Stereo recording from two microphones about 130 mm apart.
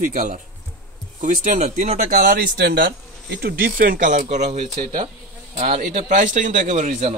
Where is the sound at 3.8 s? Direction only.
85° right.